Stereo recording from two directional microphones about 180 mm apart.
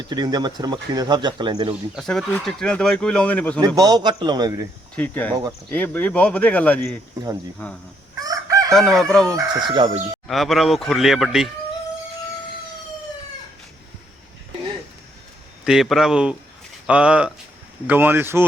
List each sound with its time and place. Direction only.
0.1 s speech: 20° right (ahead or behind)
2.0 s speech: centre (ahead or behind)
3.8 s speech: 20° right (ahead or behind)
4.9 s speech: 10° left (ahead or behind)
5.3 s speech: 25° right (ahead or behind)
5.7 s speech: 10° left (ahead or behind)
7.2 s speech: 20° right (ahead or behind)
8.2 s chicken: 20° right (ahead or behind)
8.7 s speech: centre (ahead or behind)
9.6 s speech: 30° right (ahead or behind)
10.2 s speech: centre (ahead or behind)
15.6 s speech: centre (ahead or behind)